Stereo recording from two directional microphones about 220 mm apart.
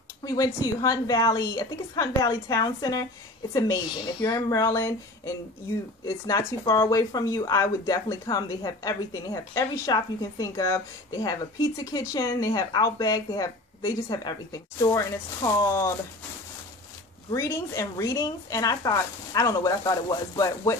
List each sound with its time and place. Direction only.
0.2 s speech: 15° left (ahead or behind)
17.3 s speech: 15° left (ahead or behind)